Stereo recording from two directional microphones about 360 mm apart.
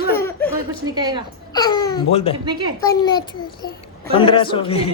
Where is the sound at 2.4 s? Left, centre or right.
Centre.